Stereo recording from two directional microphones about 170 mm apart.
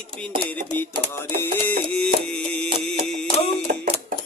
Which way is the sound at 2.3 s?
5° left (ahead or behind).